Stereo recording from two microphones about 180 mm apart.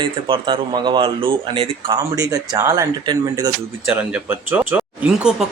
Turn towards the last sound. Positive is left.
turn(degrees=-5)  # may be behind; listen again after turning